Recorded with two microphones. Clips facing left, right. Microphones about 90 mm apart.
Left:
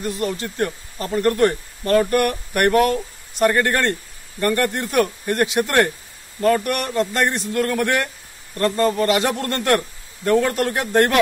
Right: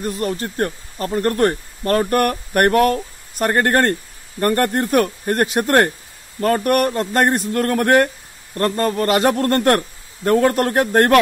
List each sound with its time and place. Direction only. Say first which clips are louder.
0.0 s speech: right 2 dB; 40° right (ahead or behind)